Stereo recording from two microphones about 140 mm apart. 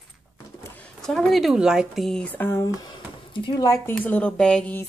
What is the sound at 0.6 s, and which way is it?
Speech, 10° left (ahead or behind).